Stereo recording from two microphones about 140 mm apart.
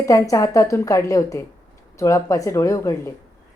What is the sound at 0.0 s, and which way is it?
A woman's voice, 25° left (ahead or behind).